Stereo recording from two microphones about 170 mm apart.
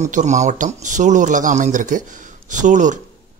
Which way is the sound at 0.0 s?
45° right (ahead or behind).